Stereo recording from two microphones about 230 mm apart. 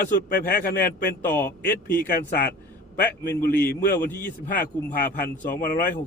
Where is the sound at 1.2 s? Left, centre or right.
Centre.